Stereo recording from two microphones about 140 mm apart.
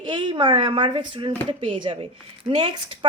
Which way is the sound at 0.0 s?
35° right (ahead or behind).